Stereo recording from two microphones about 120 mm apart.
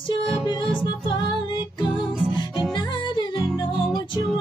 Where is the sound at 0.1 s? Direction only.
45° left (ahead or behind).